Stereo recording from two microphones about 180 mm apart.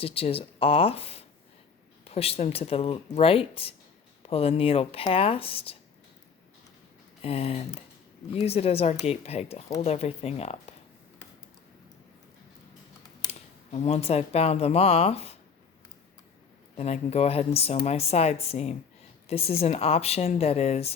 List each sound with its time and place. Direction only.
0.0 s speech: 30° left (ahead or behind)
7.2 s speech: 35° left (ahead or behind)
13.7 s speech: 35° left (ahead or behind)
16.7 s speech: 35° left (ahead or behind)